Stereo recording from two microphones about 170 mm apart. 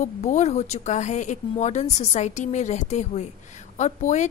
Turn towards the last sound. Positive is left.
turn(degrees=40)  # may be behind; listen again after turning